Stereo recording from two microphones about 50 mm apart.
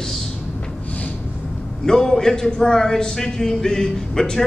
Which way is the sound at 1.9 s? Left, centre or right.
Centre.